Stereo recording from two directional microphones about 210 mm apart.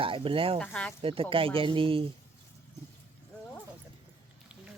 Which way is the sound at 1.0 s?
25° right (ahead or behind).